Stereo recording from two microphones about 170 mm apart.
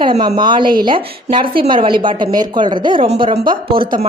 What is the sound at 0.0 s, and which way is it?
Speech, 30° right (ahead or behind).